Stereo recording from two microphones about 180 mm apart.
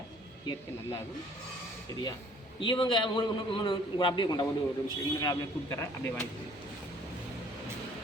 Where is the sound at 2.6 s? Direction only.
25° left (ahead or behind).